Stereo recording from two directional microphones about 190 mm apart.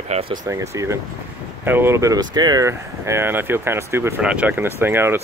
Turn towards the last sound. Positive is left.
turn(degrees=-10)  # may be behind; listen again after turning